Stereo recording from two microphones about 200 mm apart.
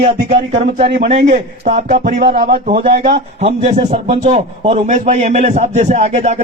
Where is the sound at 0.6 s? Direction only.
40° right (ahead or behind).